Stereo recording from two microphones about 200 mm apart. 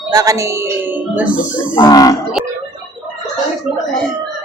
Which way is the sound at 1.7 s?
20° left (ahead or behind).